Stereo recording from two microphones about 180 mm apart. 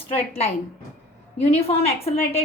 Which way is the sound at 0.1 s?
35° left (ahead or behind).